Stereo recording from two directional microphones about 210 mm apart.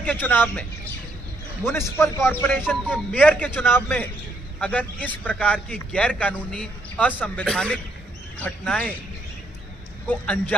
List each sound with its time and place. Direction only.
0.0 s a man's voice: 10° left (ahead or behind)
1.7 s a man's voice: 10° left (ahead or behind)
10.0 s a man's voice: 10° left (ahead or behind)